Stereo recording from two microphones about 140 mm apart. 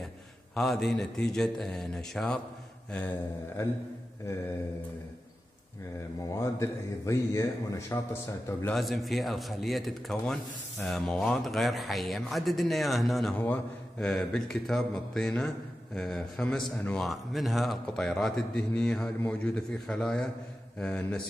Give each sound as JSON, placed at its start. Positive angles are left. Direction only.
{"t": 0.6, "sound": "a man's voice", "side_deg": 0}
{"t": 6.3, "sound": "speech", "side_deg": 20}
{"t": 8.7, "sound": "a man's voice", "side_deg": 0}